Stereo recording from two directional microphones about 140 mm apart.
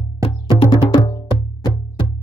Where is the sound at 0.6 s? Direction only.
40° left (ahead or behind).